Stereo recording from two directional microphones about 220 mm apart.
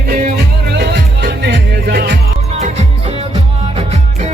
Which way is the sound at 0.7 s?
50° right (ahead or behind).